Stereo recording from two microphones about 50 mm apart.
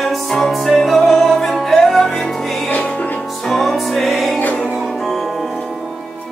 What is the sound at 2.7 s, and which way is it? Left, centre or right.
Music, left.